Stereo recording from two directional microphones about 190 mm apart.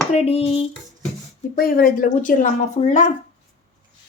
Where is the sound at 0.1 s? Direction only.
35° left (ahead or behind).